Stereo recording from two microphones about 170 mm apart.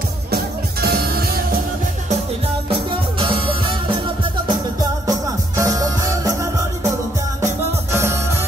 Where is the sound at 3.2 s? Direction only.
30° right (ahead or behind).